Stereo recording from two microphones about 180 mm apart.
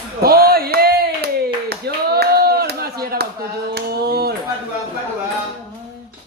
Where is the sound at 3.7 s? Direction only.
60° right (ahead or behind).